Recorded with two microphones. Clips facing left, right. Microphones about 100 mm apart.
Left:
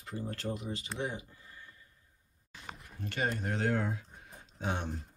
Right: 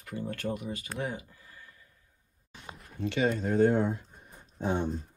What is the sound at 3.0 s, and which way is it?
Speech, 50° left (ahead or behind).